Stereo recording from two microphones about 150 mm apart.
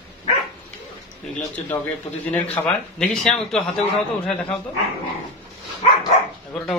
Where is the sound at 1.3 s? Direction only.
10° left (ahead or behind).